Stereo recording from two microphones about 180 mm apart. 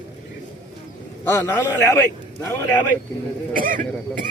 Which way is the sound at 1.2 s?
15° left (ahead or behind).